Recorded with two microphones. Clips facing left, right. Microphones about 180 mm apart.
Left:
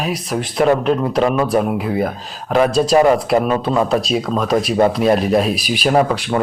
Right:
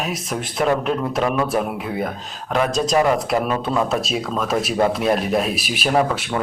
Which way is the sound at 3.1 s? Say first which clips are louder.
Left 5 dB; 35° left (ahead or behind).